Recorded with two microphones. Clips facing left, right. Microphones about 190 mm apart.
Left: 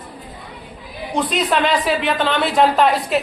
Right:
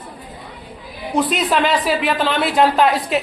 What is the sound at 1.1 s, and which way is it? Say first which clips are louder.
A woman's voice: right 1 dB; centre (ahead or behind).